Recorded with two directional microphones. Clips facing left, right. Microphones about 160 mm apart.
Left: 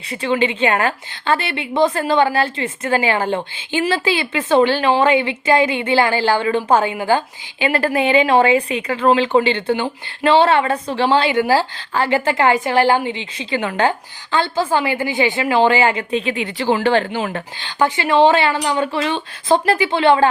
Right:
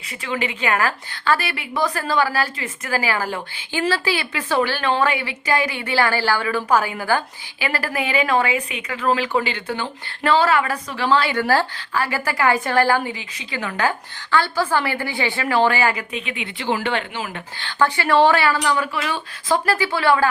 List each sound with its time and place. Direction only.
0.1 s a woman's voice: 30° left (ahead or behind)
11.3 s speech: 15° left (ahead or behind)
11.9 s a woman's voice: 25° left (ahead or behind)
17.6 s a woman's voice: 15° left (ahead or behind)